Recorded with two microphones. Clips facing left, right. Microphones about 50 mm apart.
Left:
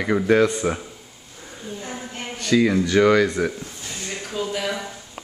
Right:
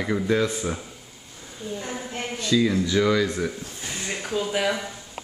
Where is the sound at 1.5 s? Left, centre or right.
Centre.